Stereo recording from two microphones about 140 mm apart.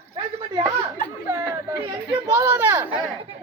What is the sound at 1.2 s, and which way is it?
Speech, 20° right (ahead or behind).